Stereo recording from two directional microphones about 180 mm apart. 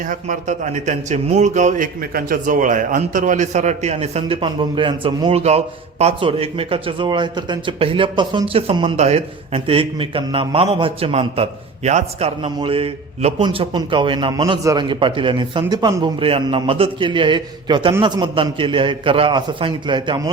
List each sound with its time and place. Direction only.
0.1 s a man's voice: 45° right (ahead or behind); by 20.3 s 25° right (ahead or behind)